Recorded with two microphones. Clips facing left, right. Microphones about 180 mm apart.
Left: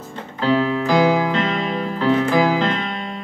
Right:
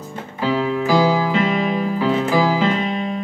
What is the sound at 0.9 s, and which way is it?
Music, 15° left (ahead or behind).